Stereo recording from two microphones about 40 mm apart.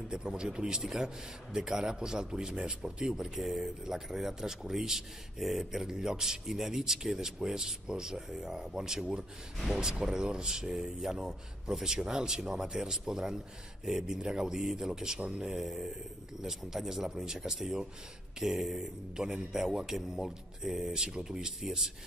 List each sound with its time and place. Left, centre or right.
0.1 s speech: centre
19.1 s speech: centre